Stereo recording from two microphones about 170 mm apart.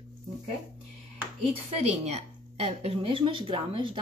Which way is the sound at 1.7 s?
40° right (ahead or behind).